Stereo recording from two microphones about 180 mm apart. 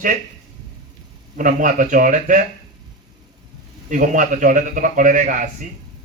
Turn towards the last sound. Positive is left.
turn(degrees=-45)  # may be behind; listen again after turning